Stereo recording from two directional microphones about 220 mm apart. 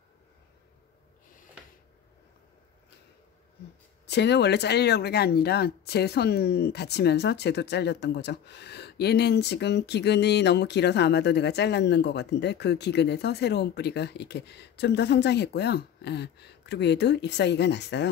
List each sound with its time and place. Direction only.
4.0 s speech: 50° left (ahead or behind)